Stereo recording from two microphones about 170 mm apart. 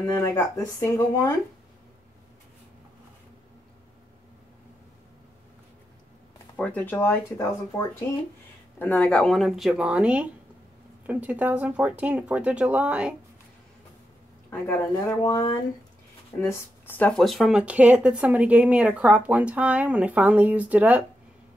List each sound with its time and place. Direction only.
0.0 s speech: 20° left (ahead or behind)
6.5 s speech: 10° left (ahead or behind)
14.5 s speech: 10° left (ahead or behind)
16.3 s speech: 15° left (ahead or behind); by 21.0 s 10° right (ahead or behind)